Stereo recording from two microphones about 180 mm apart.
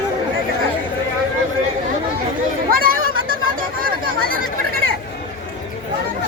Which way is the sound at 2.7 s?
50° right (ahead or behind).